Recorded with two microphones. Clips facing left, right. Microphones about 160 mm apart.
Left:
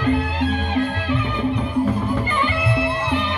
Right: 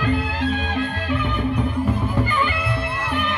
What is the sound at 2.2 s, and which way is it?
Music, 20° left (ahead or behind).